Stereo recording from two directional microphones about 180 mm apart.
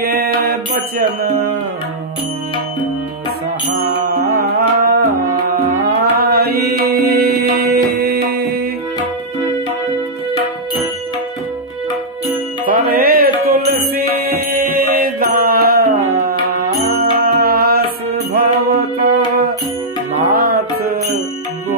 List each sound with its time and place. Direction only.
0.0 s music: 60° right (ahead or behind)
4.4 s music: 60° right (ahead or behind)
6.1 s music: 60° right (ahead or behind)
12.6 s music: 55° right (ahead or behind)
15.0 s mantra: 55° right (ahead or behind)
17.0 s music: 55° right (ahead or behind)
20.2 s music: 60° right (ahead or behind)